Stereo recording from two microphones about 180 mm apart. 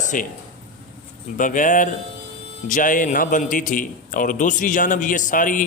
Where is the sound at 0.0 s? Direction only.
45° left (ahead or behind).